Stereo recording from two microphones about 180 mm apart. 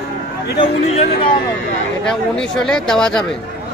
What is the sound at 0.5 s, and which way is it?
Speech, 30° left (ahead or behind).